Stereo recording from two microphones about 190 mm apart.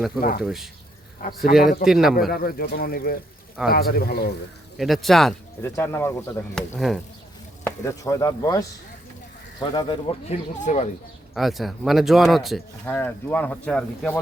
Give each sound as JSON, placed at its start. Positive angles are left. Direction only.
{"t": 0.2, "sound": "speech", "side_deg": 50}
{"t": 0.4, "sound": "speech", "side_deg": 0}
{"t": 1.8, "sound": "speech", "side_deg": 0}
{"t": 2.3, "sound": "speech", "side_deg": 50}
{"t": 4.8, "sound": "speech", "side_deg": 0}
{"t": 5.7, "sound": "speech", "side_deg": 15}
{"t": 6.5, "sound": "speech", "side_deg": 0}
{"t": 7.6, "sound": "speech", "side_deg": 15}
{"t": 10.6, "sound": "speech", "side_deg": 40}
{"t": 11.3, "sound": "speech", "side_deg": 0}
{"t": 12.8, "sound": "speech", "side_deg": 10}